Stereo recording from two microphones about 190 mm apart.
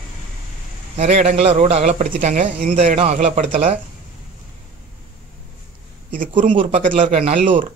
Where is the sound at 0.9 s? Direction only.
35° right (ahead or behind).